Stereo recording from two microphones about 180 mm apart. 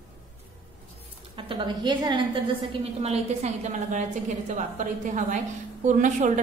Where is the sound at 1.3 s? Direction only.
25° right (ahead or behind).